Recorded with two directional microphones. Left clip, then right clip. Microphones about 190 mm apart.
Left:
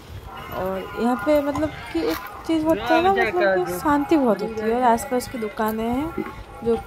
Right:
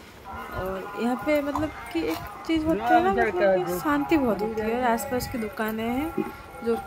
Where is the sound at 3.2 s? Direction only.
20° right (ahead or behind).